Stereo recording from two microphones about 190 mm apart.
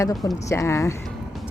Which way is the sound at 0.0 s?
20° left (ahead or behind).